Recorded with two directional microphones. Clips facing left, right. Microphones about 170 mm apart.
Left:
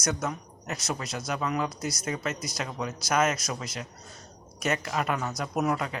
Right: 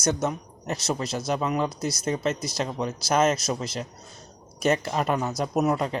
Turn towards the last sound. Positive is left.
turn(degrees=-30)  # may be behind; listen again after turning